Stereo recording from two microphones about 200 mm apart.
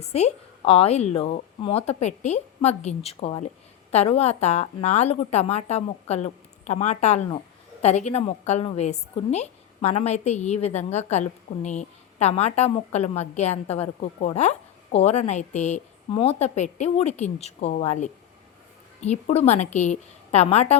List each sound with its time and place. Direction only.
0.0 s a woman's voice: 30° left (ahead or behind)